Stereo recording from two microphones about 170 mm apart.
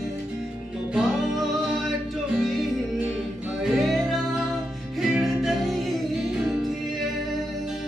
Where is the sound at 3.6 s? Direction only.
Centre (ahead or behind).